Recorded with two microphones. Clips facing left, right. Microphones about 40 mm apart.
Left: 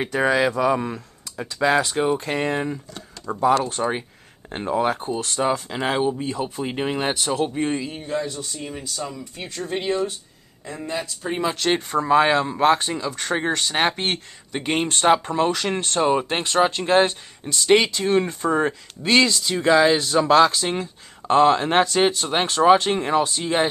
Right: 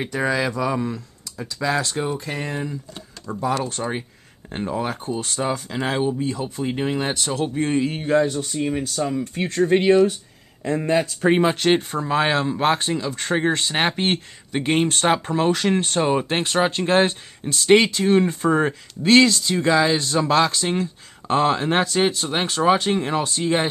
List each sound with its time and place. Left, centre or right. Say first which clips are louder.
0.0 s speech: left 3 dB; left
0.7 s speech: right 1 dB; left
2.1 s speech: left 4 dB; left
3.3 s speech: left 4 dB; centre
7.8 s speech: right 7 dB; right
8.3 s speech: right 8 dB; right
10.6 s speech: right 8 dB; right
11.5 s speech: right 2 dB; centre
12.1 s speech: left 3 dB; centre